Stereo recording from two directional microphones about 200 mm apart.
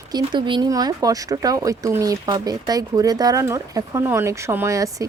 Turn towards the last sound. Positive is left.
turn(degrees=-15)  # may be behind; listen again after turning